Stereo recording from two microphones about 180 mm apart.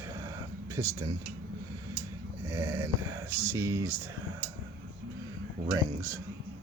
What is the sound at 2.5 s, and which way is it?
Speech, 15° right (ahead or behind).